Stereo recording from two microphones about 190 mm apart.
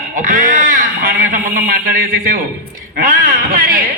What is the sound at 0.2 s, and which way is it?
A man's voice, 45° right (ahead or behind).